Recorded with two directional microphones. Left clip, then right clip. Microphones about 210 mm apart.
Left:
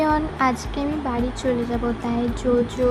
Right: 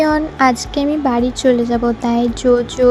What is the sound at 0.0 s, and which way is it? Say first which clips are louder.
Speech: right 7 dB; 25° right (ahead or behind).